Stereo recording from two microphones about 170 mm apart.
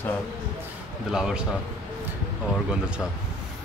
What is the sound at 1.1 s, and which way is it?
Speech, 5° right (ahead or behind).